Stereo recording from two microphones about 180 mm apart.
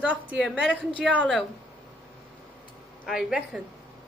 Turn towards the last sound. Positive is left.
turn(degrees=-5)  # may be behind; listen again after turning